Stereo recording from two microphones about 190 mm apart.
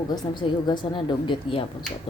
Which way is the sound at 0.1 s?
25° left (ahead or behind).